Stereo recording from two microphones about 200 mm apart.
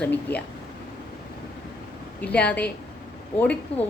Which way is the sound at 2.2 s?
5° left (ahead or behind).